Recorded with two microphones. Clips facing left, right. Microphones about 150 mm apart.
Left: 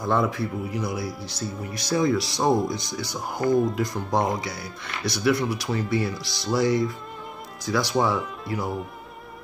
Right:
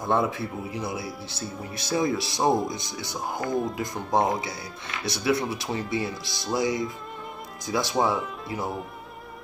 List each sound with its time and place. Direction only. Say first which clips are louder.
0.0 s speech: left 1 dB; 25° right (ahead or behind)
3.4 s speech: left 7 dB; 35° left (ahead or behind)
3.8 s speech: even; 20° right (ahead or behind)
8.1 s speech: left 1 dB; centre (ahead or behind)